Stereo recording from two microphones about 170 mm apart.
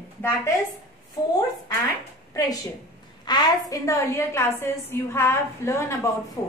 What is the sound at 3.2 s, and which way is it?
A woman's voice, 25° left (ahead or behind).